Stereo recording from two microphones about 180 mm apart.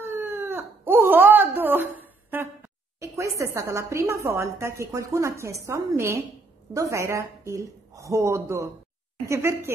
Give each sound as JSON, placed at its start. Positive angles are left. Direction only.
{"t": 0.0, "sound": "wail", "side_deg": -15}
{"t": 6.7, "sound": "a woman's voice", "side_deg": -15}